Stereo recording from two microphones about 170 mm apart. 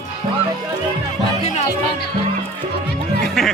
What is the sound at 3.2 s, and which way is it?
Music, centre (ahead or behind).